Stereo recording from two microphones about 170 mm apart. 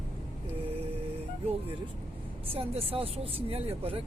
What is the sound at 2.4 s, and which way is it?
Speech, 35° right (ahead or behind).